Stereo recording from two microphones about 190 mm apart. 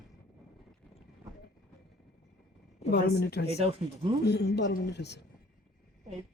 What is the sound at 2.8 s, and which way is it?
Speech, 60° left (ahead or behind).